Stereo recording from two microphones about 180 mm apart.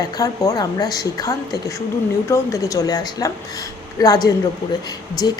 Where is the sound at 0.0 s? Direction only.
20° left (ahead or behind).